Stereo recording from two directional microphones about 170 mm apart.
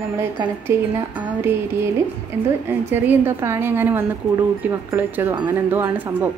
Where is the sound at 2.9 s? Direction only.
10° right (ahead or behind).